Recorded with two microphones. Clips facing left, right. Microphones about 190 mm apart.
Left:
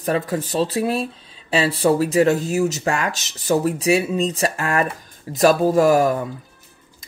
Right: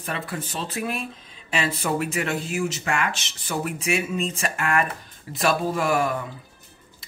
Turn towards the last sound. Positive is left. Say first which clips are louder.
# left 8 dB
turn(degrees=40)  # may be behind; listen again after turning